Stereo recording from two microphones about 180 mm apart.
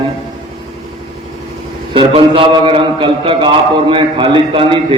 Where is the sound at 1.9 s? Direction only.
30° right (ahead or behind).